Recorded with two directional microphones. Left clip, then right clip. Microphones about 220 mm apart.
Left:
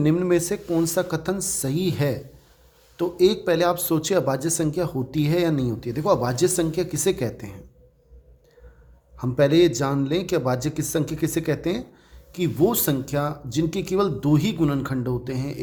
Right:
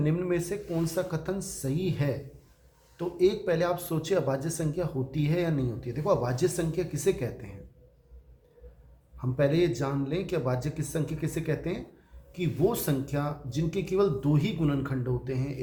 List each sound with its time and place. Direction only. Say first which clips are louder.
0.0 s speech: left 8 dB; 50° left (ahead or behind)
9.1 s speech: left 8 dB; 50° left (ahead or behind)